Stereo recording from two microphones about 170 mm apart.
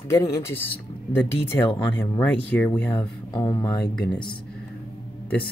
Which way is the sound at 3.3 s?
25° left (ahead or behind).